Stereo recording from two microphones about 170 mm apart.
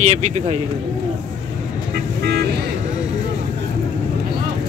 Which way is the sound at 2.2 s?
75° right (ahead or behind).